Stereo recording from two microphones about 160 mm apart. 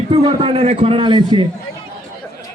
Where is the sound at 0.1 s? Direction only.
35° right (ahead or behind).